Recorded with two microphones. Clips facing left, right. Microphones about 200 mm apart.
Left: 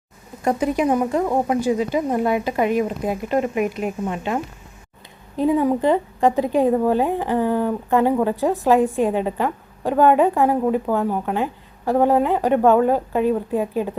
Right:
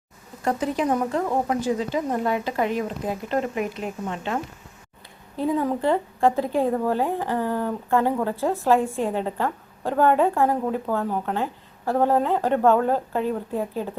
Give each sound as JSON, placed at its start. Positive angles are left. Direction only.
{"t": 0.4, "sound": "a woman's voice", "side_deg": 15}
{"t": 5.4, "sound": "a woman's voice", "side_deg": 15}